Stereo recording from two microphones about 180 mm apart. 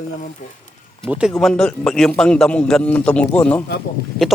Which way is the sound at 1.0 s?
Centre (ahead or behind).